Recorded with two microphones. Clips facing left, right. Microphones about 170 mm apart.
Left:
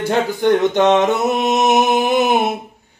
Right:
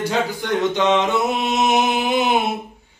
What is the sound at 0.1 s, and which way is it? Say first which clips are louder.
Speech: left 6 dB; 55° left (ahead or behind).